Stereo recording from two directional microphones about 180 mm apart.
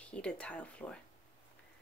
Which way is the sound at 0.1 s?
5° left (ahead or behind).